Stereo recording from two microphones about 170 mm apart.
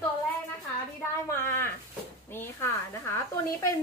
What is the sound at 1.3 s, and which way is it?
A woman's voice, 15° left (ahead or behind).